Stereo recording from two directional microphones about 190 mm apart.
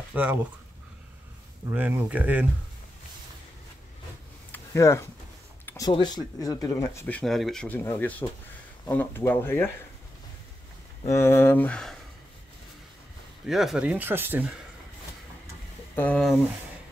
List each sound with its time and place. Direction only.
0.1 s speech: 10° right (ahead or behind)
1.7 s speech: 10° right (ahead or behind)
4.5 s a sound: 15° left (ahead or behind)
5.7 s speech: 20° left (ahead or behind)
11.1 s speech: 15° left (ahead or behind)
13.5 s speech: centre (ahead or behind)
16.0 s speech: 5° left (ahead or behind)